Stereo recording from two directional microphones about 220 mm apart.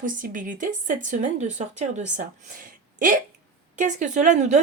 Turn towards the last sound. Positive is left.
turn(degrees=-35)  # may be behind; listen again after turning